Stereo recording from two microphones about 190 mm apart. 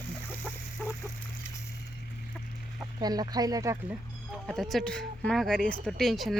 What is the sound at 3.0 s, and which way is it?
Speech, 20° right (ahead or behind).